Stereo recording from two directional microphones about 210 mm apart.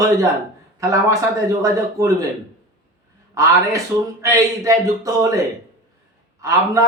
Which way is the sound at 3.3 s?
15° right (ahead or behind).